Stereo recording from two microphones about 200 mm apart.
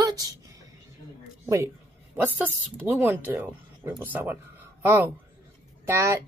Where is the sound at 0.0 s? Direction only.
15° right (ahead or behind).